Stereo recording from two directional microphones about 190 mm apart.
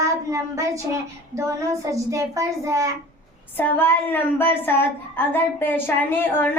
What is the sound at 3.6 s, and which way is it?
A woman's voice, 10° left (ahead or behind).